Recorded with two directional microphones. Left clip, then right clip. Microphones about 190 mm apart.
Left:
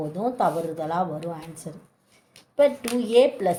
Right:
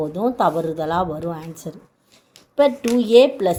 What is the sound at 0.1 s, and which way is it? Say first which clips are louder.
A woman's voice: right 3 dB; 40° right (ahead or behind).